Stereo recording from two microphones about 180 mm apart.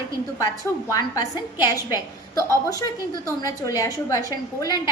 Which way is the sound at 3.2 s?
20° left (ahead or behind).